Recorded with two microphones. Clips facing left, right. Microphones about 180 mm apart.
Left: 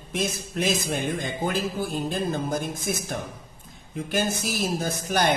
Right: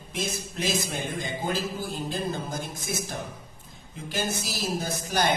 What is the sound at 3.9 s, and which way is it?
Speech, 55° left (ahead or behind).